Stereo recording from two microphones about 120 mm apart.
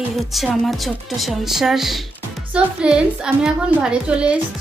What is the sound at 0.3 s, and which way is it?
A woman's voice, centre (ahead or behind).